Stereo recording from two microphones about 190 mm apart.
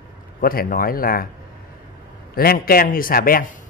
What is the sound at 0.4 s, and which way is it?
Speech, 50° left (ahead or behind).